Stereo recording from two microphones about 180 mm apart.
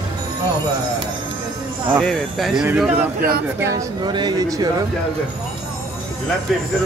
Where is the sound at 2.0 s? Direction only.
Centre (ahead or behind).